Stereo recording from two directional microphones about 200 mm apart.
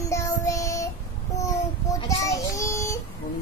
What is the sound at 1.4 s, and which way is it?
A child's voice, 15° left (ahead or behind).